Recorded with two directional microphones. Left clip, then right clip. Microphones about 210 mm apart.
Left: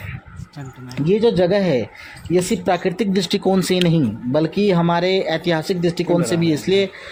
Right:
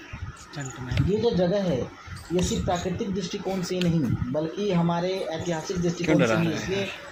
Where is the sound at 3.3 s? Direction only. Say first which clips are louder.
Left 12 dB; 50° left (ahead or behind).